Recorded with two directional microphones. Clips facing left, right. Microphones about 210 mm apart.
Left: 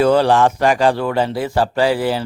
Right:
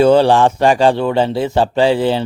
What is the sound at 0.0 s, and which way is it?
A man's voice, 25° right (ahead or behind).